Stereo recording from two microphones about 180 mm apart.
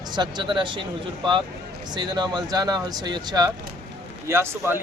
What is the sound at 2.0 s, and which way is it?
Speech, 25° right (ahead or behind).